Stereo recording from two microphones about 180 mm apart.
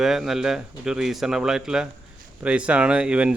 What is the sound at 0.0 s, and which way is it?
Speech, centre (ahead or behind).